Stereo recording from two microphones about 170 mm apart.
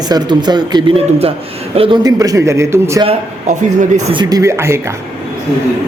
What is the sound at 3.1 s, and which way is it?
Speech, 45° right (ahead or behind).